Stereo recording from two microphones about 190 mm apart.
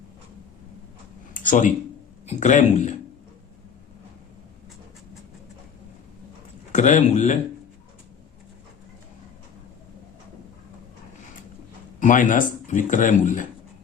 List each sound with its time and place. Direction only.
1.3 s a sound: 45° left (ahead or behind)
2.2 s speech: 40° left (ahead or behind)
6.7 s speech: 40° left (ahead or behind)
11.9 s speech: 45° left (ahead or behind)